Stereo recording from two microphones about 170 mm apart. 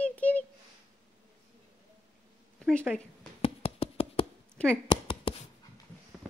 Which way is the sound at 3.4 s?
35° left (ahead or behind).